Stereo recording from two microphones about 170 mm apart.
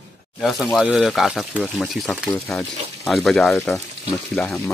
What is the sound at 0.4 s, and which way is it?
Speech, centre (ahead or behind).